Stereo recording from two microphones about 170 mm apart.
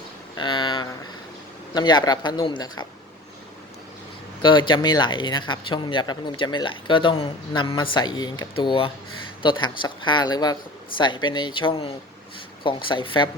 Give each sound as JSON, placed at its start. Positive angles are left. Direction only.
{"t": 0.3, "sound": "a sound", "side_deg": 25}
{"t": 1.7, "sound": "speech", "side_deg": 25}
{"t": 4.4, "sound": "speech", "side_deg": 25}